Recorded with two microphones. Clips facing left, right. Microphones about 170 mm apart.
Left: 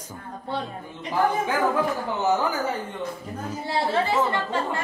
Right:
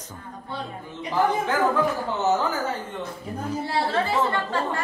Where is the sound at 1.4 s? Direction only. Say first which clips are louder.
Right 1 dB; 10° left (ahead or behind).